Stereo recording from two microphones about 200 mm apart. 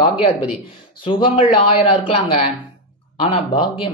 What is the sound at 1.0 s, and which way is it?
Speech, 25° left (ahead or behind).